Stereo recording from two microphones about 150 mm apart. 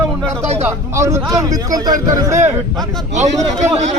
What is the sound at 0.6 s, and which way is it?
A man's voice, 20° right (ahead or behind).